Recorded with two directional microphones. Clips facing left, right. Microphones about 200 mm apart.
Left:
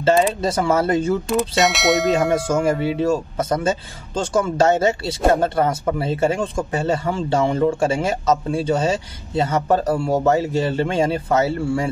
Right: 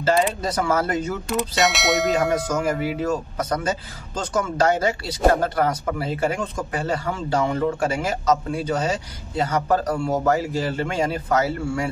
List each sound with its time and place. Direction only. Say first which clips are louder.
0.0 s speech: left 4 dB; 25° left (ahead or behind)
1.6 s speech: left 2 dB; centre (ahead or behind)
2.5 s speech: left 4 dB; 25° left (ahead or behind)